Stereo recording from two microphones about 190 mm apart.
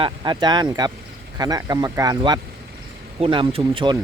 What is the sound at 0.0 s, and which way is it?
Speech, 25° right (ahead or behind).